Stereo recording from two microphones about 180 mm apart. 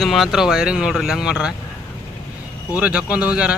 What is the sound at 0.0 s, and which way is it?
Speech, centre (ahead or behind).